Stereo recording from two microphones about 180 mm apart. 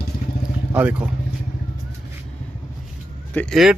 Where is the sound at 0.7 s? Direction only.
10° right (ahead or behind).